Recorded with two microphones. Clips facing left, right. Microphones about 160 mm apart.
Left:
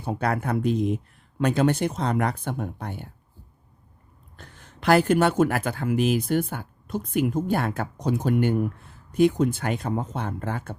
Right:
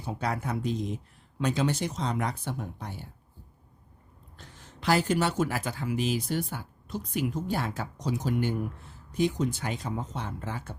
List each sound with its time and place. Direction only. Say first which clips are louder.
0.0 s speech: left 6 dB; 60° left (ahead or behind)
4.4 s speech: left 3 dB; 55° left (ahead or behind)